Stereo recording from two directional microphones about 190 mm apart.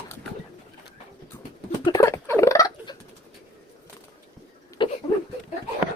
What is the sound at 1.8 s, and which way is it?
Rodents, 20° left (ahead or behind).